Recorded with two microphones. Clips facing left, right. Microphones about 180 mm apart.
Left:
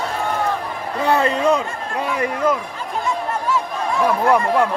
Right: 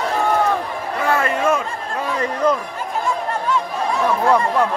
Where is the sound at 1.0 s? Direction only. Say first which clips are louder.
Left 2 dB; 20° left (ahead or behind).